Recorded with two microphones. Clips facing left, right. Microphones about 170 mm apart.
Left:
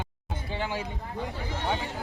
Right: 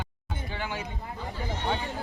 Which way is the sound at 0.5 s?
25° left (ahead or behind).